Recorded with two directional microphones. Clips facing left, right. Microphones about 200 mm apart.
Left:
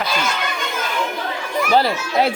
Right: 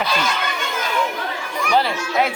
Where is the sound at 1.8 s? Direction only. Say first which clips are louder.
Left 1 dB; 35° left (ahead or behind).